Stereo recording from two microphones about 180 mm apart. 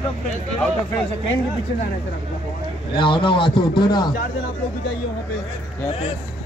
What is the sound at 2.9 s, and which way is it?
Speech, 30° left (ahead or behind).